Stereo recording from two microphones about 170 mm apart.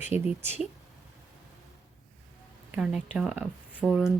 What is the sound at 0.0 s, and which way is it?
Speech, 10° right (ahead or behind).